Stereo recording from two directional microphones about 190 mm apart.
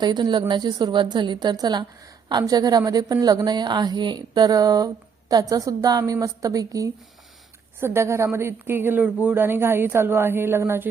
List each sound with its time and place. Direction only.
0.0 s a woman's voice: 25° right (ahead or behind)